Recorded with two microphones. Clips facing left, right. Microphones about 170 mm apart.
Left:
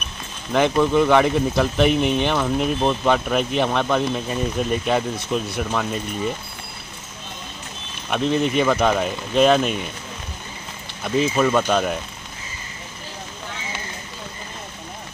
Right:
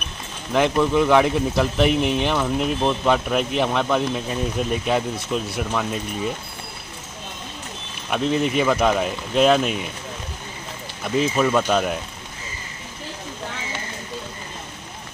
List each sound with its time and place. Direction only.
0.5 s speech: centre (ahead or behind)
8.1 s speech: centre (ahead or behind)
11.1 s speech: centre (ahead or behind)